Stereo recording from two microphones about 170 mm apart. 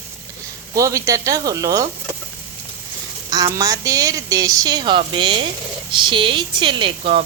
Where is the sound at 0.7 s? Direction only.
20° right (ahead or behind).